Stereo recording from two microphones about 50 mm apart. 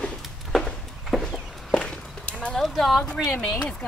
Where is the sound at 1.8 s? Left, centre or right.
Left.